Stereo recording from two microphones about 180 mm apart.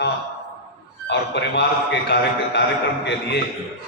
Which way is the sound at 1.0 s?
75° left (ahead or behind).